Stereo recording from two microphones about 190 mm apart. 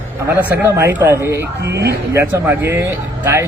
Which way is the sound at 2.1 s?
15° right (ahead or behind).